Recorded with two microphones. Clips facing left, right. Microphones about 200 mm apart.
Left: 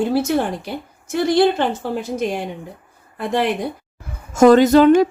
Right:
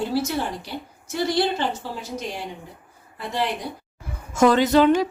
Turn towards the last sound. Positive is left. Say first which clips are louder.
# left 6 dB
turn(degrees=50)  # may be behind; listen again after turning